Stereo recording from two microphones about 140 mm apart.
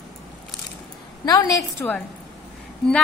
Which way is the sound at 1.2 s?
25° left (ahead or behind).